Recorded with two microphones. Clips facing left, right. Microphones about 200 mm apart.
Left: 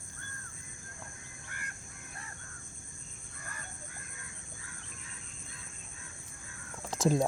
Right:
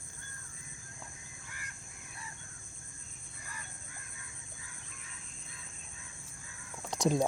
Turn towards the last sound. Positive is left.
turn(degrees=0)  # may be behind; listen again after turning